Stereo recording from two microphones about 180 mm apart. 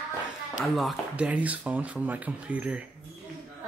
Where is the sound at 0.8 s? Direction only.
5° right (ahead or behind).